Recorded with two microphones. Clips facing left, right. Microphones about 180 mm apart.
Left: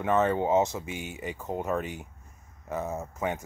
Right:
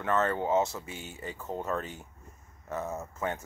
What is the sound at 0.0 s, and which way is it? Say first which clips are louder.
Speech: left 4 dB; 15° left (ahead or behind).